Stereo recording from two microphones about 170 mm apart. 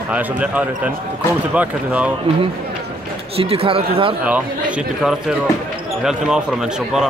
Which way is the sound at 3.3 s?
35° right (ahead or behind).